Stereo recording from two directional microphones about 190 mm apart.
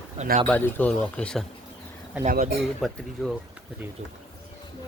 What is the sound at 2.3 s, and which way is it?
Speech, 45° right (ahead or behind).